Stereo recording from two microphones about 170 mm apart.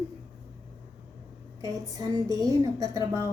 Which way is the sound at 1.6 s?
20° right (ahead or behind).